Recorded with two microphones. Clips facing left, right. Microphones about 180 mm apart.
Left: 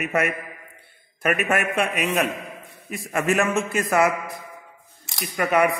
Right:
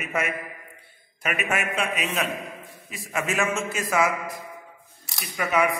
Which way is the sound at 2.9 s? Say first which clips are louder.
Left 5 dB; 55° left (ahead or behind).